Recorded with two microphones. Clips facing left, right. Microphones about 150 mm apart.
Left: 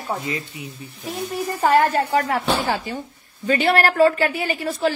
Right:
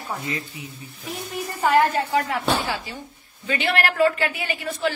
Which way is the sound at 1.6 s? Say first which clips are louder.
Left 2 dB; 40° left (ahead or behind).